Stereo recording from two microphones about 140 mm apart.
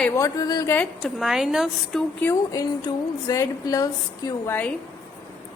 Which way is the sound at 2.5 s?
25° left (ahead or behind).